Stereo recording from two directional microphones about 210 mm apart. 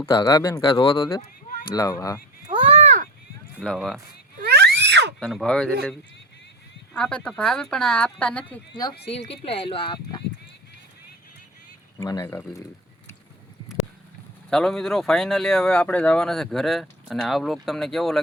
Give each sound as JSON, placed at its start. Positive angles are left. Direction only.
{"t": 0.0, "sound": "speech", "side_deg": 20}
{"t": 2.5, "sound": "a sound", "side_deg": -25}
{"t": 3.6, "sound": "speech", "side_deg": 0}
{"t": 4.4, "sound": "a sound", "side_deg": -50}
{"t": 5.2, "sound": "speech", "side_deg": 0}
{"t": 6.9, "sound": "speech", "side_deg": 5}
{"t": 9.1, "sound": "speech", "side_deg": 25}
{"t": 11.9, "sound": "speech", "side_deg": 15}
{"t": 14.5, "sound": "speech", "side_deg": 0}